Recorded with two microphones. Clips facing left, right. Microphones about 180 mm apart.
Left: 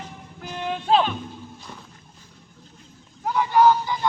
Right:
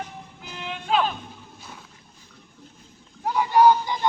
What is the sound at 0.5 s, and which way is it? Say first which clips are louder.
Music: left 7 dB; 45° left (ahead or behind).